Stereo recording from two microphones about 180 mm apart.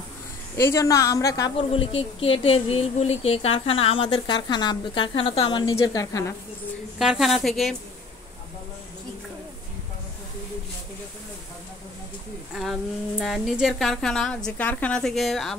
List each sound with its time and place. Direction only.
0.6 s a woman's voice: 15° left (ahead or behind)
7.0 s a woman's voice: centre (ahead or behind)
13.2 s a woman's voice: centre (ahead or behind)